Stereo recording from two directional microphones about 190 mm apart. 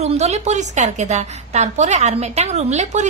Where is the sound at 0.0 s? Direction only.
35° right (ahead or behind).